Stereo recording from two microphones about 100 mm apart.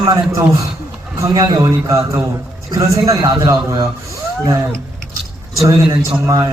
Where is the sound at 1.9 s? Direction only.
30° right (ahead or behind).